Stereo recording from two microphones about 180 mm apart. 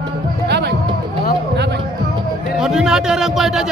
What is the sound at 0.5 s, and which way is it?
Music, 70° right (ahead or behind).